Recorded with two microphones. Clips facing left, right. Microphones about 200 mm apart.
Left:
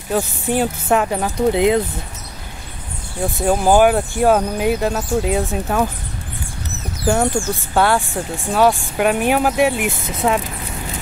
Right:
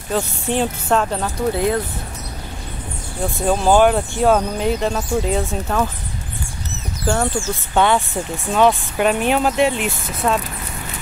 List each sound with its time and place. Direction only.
0.1 s speech: 10° left (ahead or behind)
3.4 s speech: 10° left (ahead or behind)
7.1 s speech: 15° left (ahead or behind)